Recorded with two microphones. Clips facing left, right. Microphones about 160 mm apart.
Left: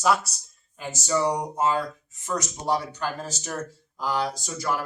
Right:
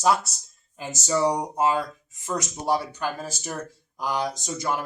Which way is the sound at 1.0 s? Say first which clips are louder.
Right 1 dB; 15° right (ahead or behind).